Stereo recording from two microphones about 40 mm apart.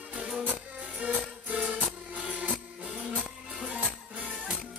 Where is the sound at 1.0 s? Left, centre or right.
Right.